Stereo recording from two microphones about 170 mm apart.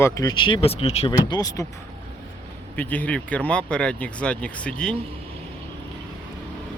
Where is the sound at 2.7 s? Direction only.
10° left (ahead or behind).